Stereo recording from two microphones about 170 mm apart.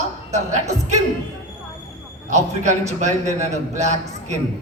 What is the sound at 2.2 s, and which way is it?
A man's voice, 45° right (ahead or behind).